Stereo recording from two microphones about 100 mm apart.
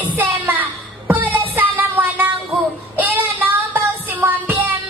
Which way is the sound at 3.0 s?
20° right (ahead or behind).